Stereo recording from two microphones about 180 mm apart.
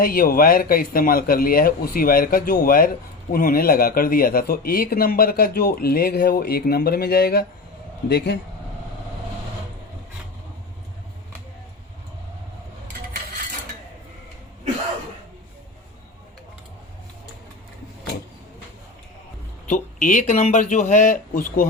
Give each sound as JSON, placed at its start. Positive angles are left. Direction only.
{"t": 0.0, "sound": "a man's voice", "side_deg": 55}
{"t": 19.6, "sound": "a man's voice", "side_deg": 45}